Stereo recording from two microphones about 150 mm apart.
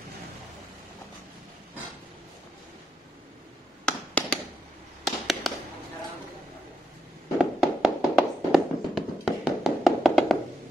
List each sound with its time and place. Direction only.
3.8 s a sound: 5° left (ahead or behind)
5.0 s fireworks: centre (ahead or behind)
7.3 s fireworks: 5° right (ahead or behind)